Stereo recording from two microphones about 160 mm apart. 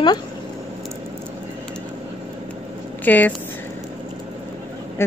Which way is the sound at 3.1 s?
10° left (ahead or behind).